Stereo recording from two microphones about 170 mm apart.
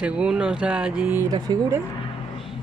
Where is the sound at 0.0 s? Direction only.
5° right (ahead or behind).